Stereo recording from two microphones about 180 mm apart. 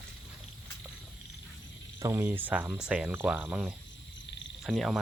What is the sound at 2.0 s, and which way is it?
Speech, 15° right (ahead or behind).